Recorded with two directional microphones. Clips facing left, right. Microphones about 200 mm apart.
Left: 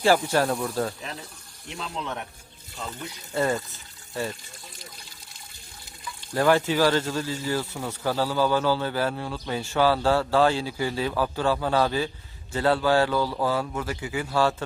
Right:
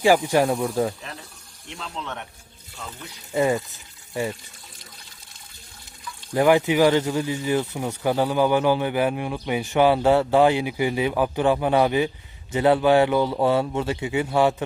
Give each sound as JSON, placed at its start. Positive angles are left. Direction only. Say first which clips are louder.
{"t": 0.0, "sound": "speech", "louder": "right 3 dB", "side_deg": -15}
{"t": 1.7, "sound": "speech", "louder": "left 1 dB", "side_deg": 5}
{"t": 3.3, "sound": "speech", "louder": "right 4 dB", "side_deg": -15}
{"t": 6.3, "sound": "speech", "louder": "right 4 dB", "side_deg": -15}